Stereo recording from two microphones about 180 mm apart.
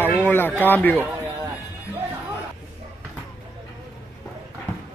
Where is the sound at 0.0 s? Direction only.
10° left (ahead or behind).